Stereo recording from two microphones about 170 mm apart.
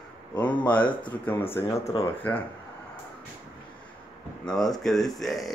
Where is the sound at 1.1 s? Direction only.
10° left (ahead or behind).